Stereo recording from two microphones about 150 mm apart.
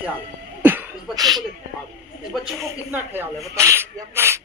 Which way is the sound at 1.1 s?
25° right (ahead or behind).